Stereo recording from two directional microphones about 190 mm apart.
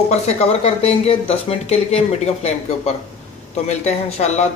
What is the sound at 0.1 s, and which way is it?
Speech, 35° left (ahead or behind).